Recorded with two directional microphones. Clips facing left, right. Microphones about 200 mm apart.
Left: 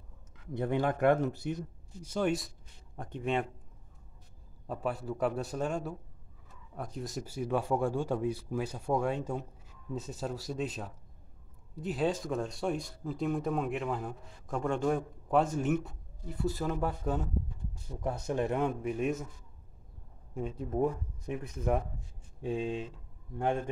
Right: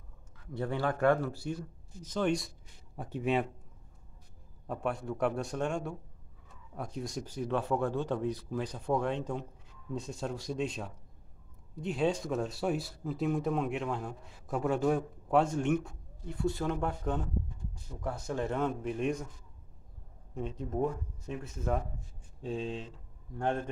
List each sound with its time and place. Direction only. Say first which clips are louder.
0.5 s speech: left 2 dB; 20° left (ahead or behind); by 3.4 s 5° right (ahead or behind)
4.8 s speech: even; 5° left (ahead or behind)
18.0 s speech: left 2 dB; 20° left (ahead or behind); by 19.2 s 5° left (ahead or behind)
20.3 s speech: left 1 dB; 10° left (ahead or behind)